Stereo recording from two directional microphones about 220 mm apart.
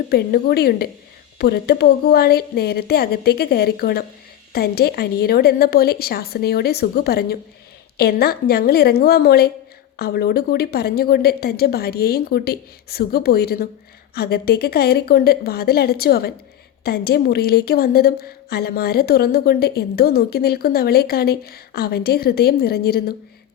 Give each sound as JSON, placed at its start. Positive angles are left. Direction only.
{"t": 0.1, "sound": "a woman's voice", "side_deg": 45}